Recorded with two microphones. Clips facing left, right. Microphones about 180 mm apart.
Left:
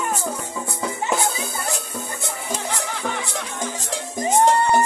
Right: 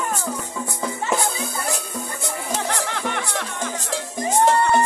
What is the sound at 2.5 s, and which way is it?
Music, 65° right (ahead or behind).